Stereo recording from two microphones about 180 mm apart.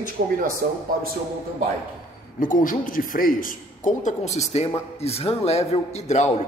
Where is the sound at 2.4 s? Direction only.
50° left (ahead or behind).